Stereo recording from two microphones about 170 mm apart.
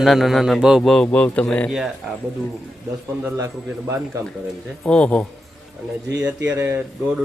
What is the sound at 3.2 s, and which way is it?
Speech, 15° right (ahead or behind).